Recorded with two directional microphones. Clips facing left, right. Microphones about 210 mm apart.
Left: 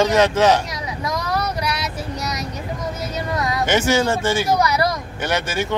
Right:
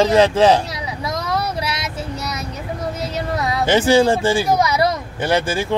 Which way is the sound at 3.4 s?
30° right (ahead or behind).